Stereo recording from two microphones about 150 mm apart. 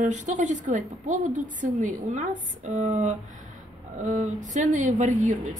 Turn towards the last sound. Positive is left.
turn(degrees=-55)  # may be behind; listen again after turning